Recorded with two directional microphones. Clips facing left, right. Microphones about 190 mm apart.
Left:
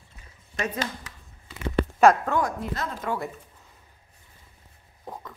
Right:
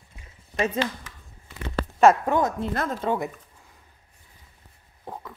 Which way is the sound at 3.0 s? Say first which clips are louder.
Right 3 dB; 20° right (ahead or behind).